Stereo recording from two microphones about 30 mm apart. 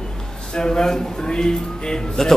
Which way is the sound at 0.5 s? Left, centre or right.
Left.